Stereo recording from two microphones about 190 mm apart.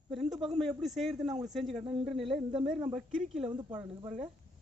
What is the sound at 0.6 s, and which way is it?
A man's voice, centre (ahead or behind).